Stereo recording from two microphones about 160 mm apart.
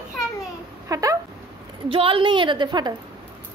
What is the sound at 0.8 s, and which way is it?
Speech, 20° right (ahead or behind).